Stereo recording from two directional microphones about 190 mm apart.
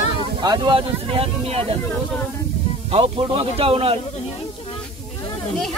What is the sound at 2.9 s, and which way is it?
Speech, 30° right (ahead or behind).